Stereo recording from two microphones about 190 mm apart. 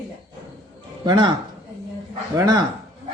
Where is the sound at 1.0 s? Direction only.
25° right (ahead or behind).